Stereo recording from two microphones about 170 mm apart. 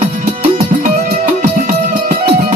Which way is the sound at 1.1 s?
55° right (ahead or behind).